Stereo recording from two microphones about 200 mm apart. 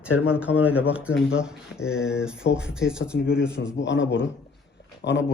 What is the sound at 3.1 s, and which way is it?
A man's voice, 55° left (ahead or behind).